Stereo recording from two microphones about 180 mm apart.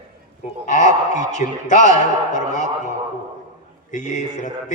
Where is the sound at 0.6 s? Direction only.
45° left (ahead or behind).